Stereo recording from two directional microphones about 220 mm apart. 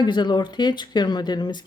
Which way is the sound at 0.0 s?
20° left (ahead or behind).